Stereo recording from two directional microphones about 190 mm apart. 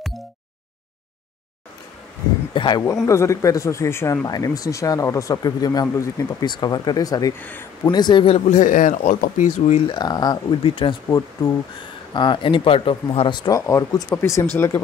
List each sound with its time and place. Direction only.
2.5 s speech: 25° left (ahead or behind)
8.5 s speech: 45° left (ahead or behind)
9.8 s speech: 20° left (ahead or behind)